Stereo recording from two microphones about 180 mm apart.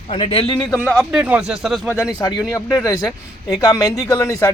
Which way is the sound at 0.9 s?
Centre (ahead or behind).